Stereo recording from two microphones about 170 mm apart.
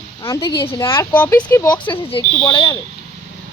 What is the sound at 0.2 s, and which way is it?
Speech, 25° left (ahead or behind).